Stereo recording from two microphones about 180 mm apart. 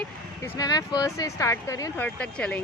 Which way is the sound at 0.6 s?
20° left (ahead or behind).